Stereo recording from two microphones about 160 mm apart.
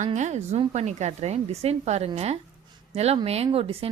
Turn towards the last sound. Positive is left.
turn(degrees=-35)  # may be behind; listen again after turning